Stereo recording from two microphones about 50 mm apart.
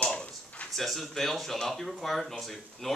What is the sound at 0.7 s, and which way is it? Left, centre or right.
Speech, centre.